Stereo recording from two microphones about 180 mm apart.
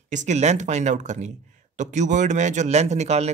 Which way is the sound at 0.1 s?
40° right (ahead or behind).